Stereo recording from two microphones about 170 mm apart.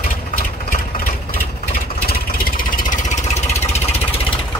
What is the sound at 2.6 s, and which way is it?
Vehicle, 50° left (ahead or behind).